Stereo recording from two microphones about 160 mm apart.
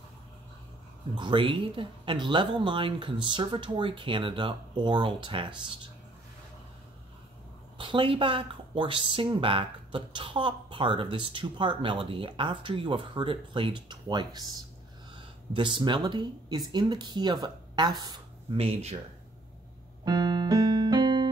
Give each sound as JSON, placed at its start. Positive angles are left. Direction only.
{"t": 1.1, "sound": "speech", "side_deg": -30}
{"t": 7.7, "sound": "speech", "side_deg": -30}
{"t": 18.6, "sound": "speech", "side_deg": -40}
{"t": 20.1, "sound": "keyboard", "side_deg": -25}